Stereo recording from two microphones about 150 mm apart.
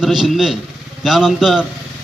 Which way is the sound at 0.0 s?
5° right (ahead or behind).